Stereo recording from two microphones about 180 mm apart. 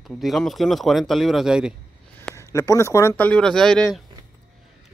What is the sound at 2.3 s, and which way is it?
Speech, 15° left (ahead or behind).